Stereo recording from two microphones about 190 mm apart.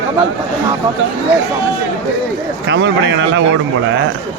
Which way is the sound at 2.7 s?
70° right (ahead or behind).